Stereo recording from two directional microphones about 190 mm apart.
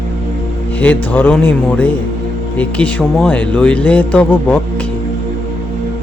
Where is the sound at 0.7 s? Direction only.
10° left (ahead or behind).